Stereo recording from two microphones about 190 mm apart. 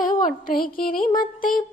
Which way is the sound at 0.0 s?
45° left (ahead or behind).